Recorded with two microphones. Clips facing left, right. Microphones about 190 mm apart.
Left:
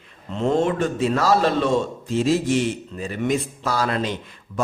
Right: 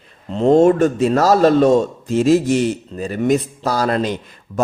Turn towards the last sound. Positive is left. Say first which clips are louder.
# right 5 dB
turn(degrees=-40)  # may be behind; listen again after turning